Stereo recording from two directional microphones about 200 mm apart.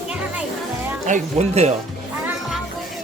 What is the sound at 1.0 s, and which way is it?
Speech, 35° right (ahead or behind).